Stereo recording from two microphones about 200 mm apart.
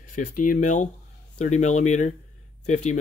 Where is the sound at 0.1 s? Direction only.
40° left (ahead or behind).